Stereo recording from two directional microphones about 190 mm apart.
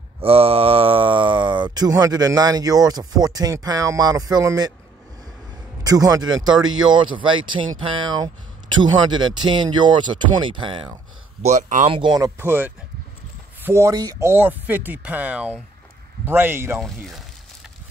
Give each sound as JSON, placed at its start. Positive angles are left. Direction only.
{"t": 0.2, "sound": "speech", "side_deg": -30}
{"t": 5.9, "sound": "speech", "side_deg": -20}
{"t": 6.2, "sound": "speech", "side_deg": -90}
{"t": 6.9, "sound": "speech", "side_deg": -25}
{"t": 11.4, "sound": "speech", "side_deg": -40}
{"t": 12.0, "sound": "speech", "side_deg": -20}
{"t": 16.8, "sound": "speech", "side_deg": 0}